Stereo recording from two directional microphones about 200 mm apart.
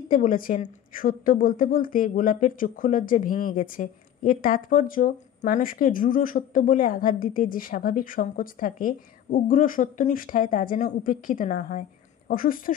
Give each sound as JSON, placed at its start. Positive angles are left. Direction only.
{"t": 0.1, "sound": "a woman's voice", "side_deg": 40}